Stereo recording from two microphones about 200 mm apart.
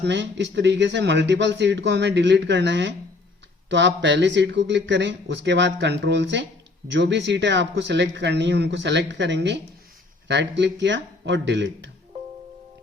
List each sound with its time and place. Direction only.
0.0 s speech: 60° right (ahead or behind)